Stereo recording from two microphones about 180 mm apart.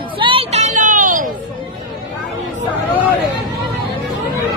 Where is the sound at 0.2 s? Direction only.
30° right (ahead or behind); by 1.3 s 45° right (ahead or behind).